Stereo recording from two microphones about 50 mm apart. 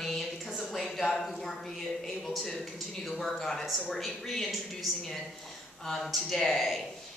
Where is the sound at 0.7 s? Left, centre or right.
Centre.